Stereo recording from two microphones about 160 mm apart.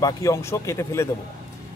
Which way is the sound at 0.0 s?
20° left (ahead or behind).